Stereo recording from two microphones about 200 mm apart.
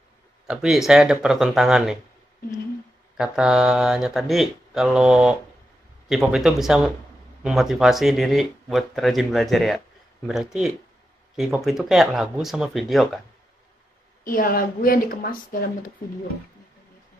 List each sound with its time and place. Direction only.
0.5 s speech: centre (ahead or behind)
3.2 s speech: 5° right (ahead or behind)
14.2 s a woman's voice: 45° left (ahead or behind)